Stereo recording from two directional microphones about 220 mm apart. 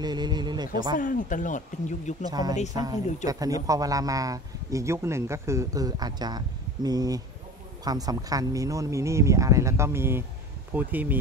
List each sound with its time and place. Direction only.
0.0 s a sound: 20° right (ahead or behind)
0.9 s speech: 35° left (ahead or behind)
2.2 s speech: 15° right (ahead or behind)